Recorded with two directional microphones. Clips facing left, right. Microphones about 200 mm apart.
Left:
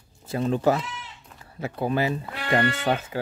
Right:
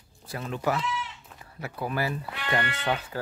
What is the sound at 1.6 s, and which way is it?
Speech, 25° left (ahead or behind).